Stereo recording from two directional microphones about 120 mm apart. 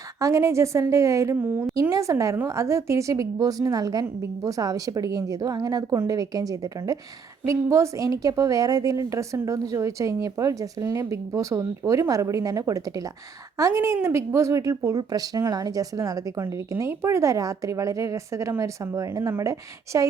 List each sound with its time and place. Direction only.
0.2 s a woman's voice: 25° right (ahead or behind)